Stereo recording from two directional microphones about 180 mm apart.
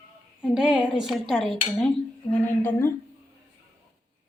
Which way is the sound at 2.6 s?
10° left (ahead or behind).